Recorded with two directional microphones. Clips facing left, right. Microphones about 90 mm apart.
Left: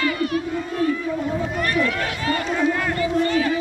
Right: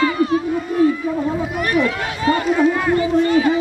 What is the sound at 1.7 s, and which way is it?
Run, 20° right (ahead or behind).